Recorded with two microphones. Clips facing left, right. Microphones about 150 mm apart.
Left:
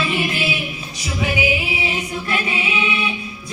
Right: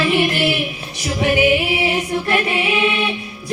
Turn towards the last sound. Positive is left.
turn(degrees=-60)  # may be behind; listen again after turning